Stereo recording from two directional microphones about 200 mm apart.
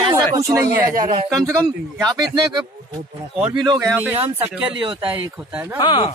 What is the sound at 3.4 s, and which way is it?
Speech, 5° right (ahead or behind).